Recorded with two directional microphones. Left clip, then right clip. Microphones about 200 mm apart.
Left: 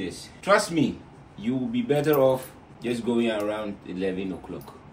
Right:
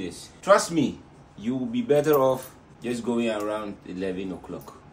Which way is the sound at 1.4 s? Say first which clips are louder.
Left 1 dB; 10° right (ahead or behind).